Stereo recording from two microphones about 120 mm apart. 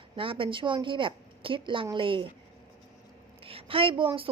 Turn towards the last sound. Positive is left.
turn(degrees=-50)  # may be behind; listen again after turning